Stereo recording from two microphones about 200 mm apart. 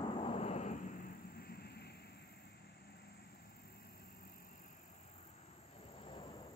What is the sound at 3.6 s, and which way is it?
Vehicle, 50° left (ahead or behind).